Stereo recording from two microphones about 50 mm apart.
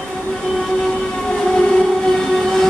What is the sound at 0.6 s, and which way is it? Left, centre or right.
Train, centre.